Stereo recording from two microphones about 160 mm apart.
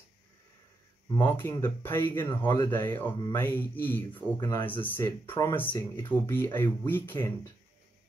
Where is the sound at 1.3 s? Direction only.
15° left (ahead or behind).